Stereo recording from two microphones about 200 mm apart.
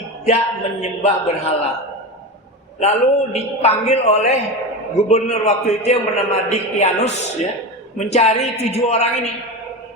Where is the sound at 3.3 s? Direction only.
30° left (ahead or behind).